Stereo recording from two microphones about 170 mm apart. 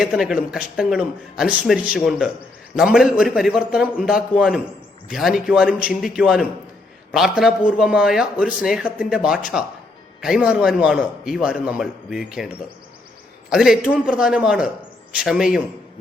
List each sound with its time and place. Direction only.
0.0 s a man's voice: centre (ahead or behind)
13.5 s a man's voice: 5° right (ahead or behind)